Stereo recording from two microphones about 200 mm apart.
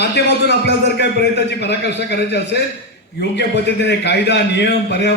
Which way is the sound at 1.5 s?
60° left (ahead or behind).